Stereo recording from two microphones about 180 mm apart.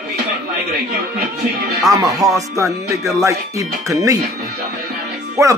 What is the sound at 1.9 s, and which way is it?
Speech, 20° right (ahead or behind).